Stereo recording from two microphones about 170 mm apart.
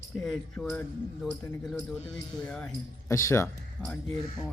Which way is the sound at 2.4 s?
10° left (ahead or behind).